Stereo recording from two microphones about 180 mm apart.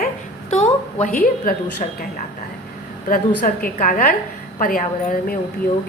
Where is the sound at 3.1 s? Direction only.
50° left (ahead or behind).